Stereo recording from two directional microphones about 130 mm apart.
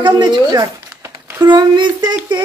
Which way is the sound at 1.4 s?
35° right (ahead or behind).